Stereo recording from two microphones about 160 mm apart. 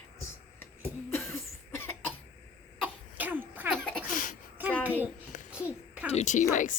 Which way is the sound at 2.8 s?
10° right (ahead or behind).